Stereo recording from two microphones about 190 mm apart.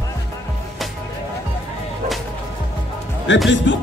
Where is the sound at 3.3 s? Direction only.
75° left (ahead or behind).